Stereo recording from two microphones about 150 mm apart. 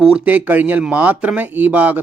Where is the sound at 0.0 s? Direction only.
5° right (ahead or behind).